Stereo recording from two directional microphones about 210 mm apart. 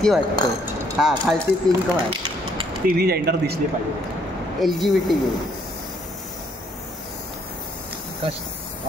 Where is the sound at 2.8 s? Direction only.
45° right (ahead or behind).